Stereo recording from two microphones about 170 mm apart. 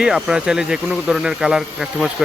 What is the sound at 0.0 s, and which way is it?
Speech, 5° right (ahead or behind).